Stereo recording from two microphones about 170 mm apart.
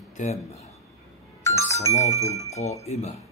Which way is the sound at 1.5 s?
15° left (ahead or behind).